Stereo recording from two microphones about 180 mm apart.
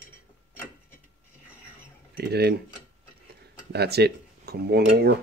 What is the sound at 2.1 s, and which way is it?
Speech, 65° right (ahead or behind).